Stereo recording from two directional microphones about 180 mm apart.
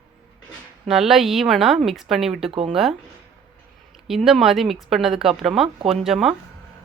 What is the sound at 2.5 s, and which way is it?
Speech, 30° right (ahead or behind).